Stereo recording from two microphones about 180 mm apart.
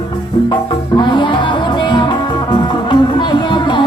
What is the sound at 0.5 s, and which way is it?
Music, 25° left (ahead or behind).